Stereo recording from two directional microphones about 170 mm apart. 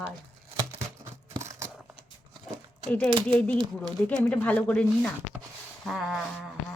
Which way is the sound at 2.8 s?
10° left (ahead or behind).